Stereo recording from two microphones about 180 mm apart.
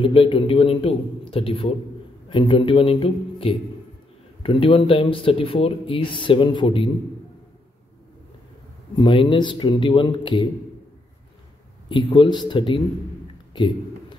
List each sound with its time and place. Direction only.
0.0 s a man's voice: 30° left (ahead or behind)
8.9 s speech: 30° left (ahead or behind)
11.9 s speech: 25° left (ahead or behind)
13.5 s a sound: 25° left (ahead or behind)